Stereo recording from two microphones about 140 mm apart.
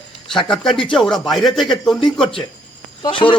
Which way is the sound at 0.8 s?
5° left (ahead or behind).